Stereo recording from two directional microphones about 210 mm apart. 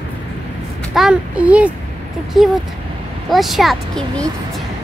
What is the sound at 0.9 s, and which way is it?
A child's voice, 5° right (ahead or behind).